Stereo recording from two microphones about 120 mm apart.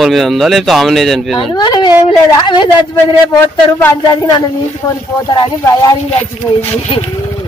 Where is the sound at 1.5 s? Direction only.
35° left (ahead or behind).